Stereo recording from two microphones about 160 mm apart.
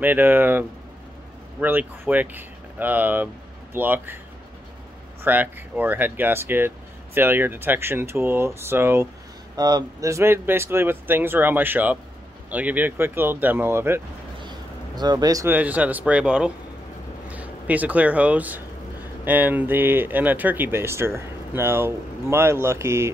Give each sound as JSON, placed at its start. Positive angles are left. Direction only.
{"t": 0.0, "sound": "speech", "side_deg": -10}
{"t": 5.2, "sound": "speech", "side_deg": -10}
{"t": 14.4, "sound": "a sound", "side_deg": -25}
{"t": 15.5, "sound": "speech", "side_deg": -10}